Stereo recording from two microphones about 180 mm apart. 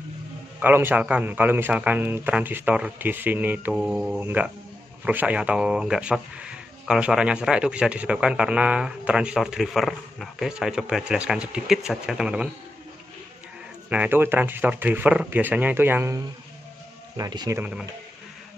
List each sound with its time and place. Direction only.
0.6 s a man's voice: 10° right (ahead or behind)
13.8 s a man's voice: 10° right (ahead or behind)
17.2 s speech: 20° right (ahead or behind)
17.6 s a man's voice: 5° right (ahead or behind)